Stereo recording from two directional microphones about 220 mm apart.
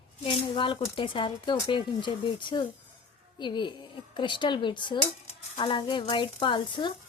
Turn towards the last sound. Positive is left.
turn(degrees=20)  # may be behind; listen again after turning